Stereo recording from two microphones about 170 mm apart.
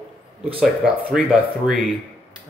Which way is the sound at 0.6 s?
10° right (ahead or behind).